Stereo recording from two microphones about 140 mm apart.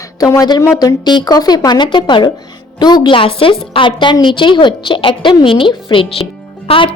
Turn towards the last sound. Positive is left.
turn(degrees=40)  # may be behind; listen again after turning